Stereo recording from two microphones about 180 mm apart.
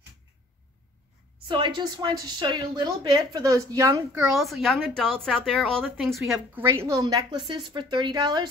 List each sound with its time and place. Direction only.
1.5 s speech: 25° right (ahead or behind)
4.4 s speech: centre (ahead or behind); by 8.5 s 25° right (ahead or behind)